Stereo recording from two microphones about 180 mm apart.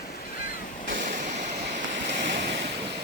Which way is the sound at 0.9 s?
45° right (ahead or behind).